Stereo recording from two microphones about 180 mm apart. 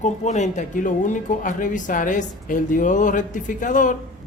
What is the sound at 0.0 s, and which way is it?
Speech, 40° left (ahead or behind).